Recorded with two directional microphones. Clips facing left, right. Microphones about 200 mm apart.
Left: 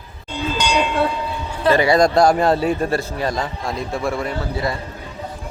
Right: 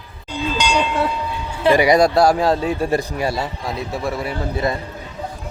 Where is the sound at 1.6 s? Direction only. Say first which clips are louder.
Right 1 dB; 15° right (ahead or behind).